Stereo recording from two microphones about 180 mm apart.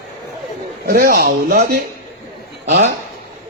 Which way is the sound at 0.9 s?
55° right (ahead or behind).